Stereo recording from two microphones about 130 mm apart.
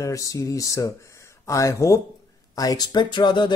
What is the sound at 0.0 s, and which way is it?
Speech, 25° left (ahead or behind).